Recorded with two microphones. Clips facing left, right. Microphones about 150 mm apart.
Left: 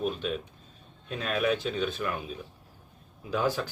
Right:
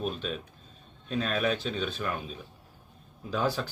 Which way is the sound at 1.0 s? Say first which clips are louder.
Even; 10° left (ahead or behind).